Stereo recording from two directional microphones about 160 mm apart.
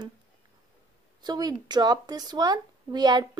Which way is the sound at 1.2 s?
25° right (ahead or behind).